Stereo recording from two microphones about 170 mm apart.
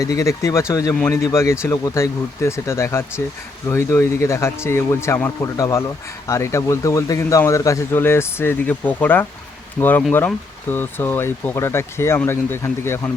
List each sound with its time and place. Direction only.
0.0 s speech: 20° left (ahead or behind)